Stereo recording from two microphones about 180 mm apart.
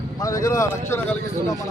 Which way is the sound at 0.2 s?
20° left (ahead or behind).